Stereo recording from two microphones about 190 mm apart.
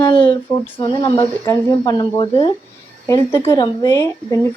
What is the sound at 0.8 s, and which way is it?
Speech, 30° left (ahead or behind).